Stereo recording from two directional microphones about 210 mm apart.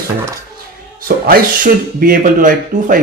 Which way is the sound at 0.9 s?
45° right (ahead or behind).